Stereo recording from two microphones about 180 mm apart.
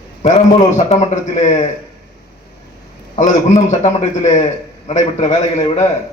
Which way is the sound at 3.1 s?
40° left (ahead or behind).